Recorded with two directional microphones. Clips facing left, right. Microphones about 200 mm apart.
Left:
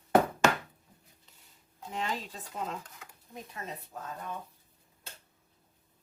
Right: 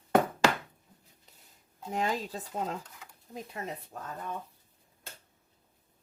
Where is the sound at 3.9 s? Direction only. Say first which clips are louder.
Even; 45° right (ahead or behind).